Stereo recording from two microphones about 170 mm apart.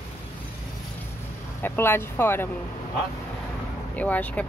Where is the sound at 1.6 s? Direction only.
15° left (ahead or behind).